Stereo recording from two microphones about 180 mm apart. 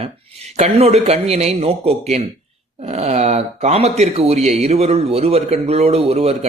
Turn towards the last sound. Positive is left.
turn(degrees=-35)  # may be behind; listen again after turning